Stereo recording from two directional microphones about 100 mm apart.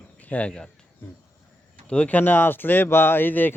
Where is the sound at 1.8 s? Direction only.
10° left (ahead or behind).